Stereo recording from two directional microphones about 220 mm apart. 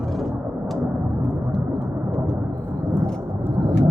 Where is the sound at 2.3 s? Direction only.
15° right (ahead or behind).